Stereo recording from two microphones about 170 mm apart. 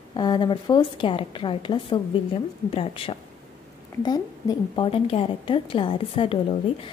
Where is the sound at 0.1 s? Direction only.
25° left (ahead or behind).